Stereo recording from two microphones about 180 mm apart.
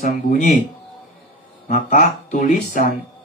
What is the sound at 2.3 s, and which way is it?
Speech, 45° left (ahead or behind).